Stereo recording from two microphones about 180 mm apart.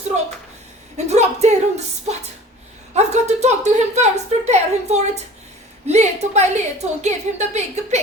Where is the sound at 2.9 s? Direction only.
40° right (ahead or behind).